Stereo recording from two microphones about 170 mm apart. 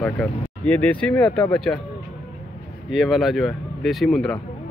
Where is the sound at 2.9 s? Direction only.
Centre (ahead or behind).